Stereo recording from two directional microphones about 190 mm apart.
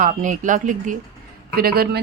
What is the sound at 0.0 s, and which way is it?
Speech, 45° right (ahead or behind).